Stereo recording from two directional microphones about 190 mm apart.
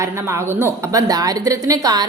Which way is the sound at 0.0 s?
15° right (ahead or behind).